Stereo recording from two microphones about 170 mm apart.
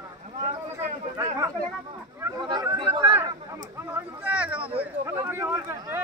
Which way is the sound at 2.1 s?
20° right (ahead or behind).